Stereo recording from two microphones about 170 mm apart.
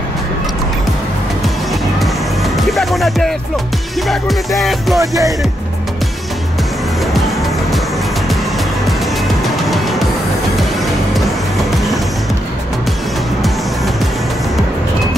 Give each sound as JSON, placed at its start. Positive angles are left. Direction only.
{"t": 1.7, "sound": "music", "side_deg": 0}
{"t": 5.0, "sound": "music", "side_deg": -20}
{"t": 9.7, "sound": "music", "side_deg": 0}
{"t": 11.7, "sound": "music", "side_deg": 0}